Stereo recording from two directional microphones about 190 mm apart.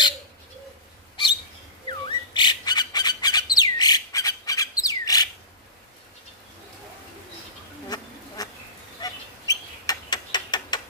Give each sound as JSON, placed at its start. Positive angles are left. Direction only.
{"t": 1.9, "sound": "bird", "side_deg": 25}
{"t": 8.4, "sound": "insect", "side_deg": 20}
{"t": 9.0, "sound": "bird", "side_deg": 20}